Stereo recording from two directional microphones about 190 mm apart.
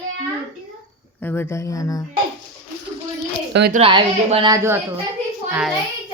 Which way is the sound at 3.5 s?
60° right (ahead or behind).